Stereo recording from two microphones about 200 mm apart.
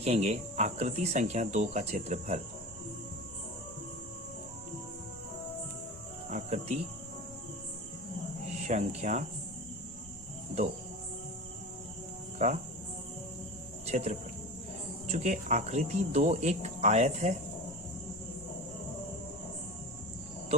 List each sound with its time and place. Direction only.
0.0 s cricket: 30° right (ahead or behind)
6.3 s cricket: 35° right (ahead or behind)
8.6 s cricket: 35° right (ahead or behind)
12.4 s cricket: 35° right (ahead or behind)
13.8 s speech: 35° right (ahead or behind)
15.0 s cricket: 35° right (ahead or behind)